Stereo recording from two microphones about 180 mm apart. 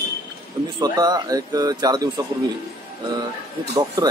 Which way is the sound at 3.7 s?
20° right (ahead or behind).